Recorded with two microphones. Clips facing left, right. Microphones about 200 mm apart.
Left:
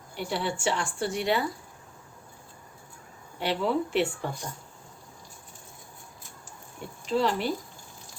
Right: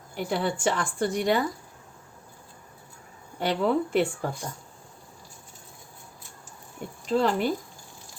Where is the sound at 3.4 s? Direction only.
50° right (ahead or behind).